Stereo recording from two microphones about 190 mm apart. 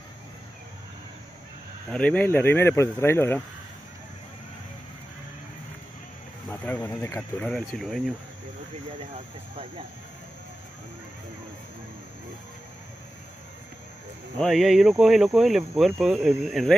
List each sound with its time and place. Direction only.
1.9 s speech: 5° left (ahead or behind)
6.5 s speech: 10° left (ahead or behind)
9.1 s speech: 30° right (ahead or behind)
14.4 s speech: centre (ahead or behind)